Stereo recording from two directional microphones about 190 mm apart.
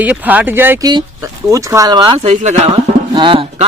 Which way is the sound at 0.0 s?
10° right (ahead or behind).